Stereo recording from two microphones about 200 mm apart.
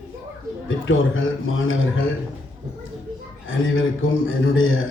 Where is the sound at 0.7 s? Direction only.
80° left.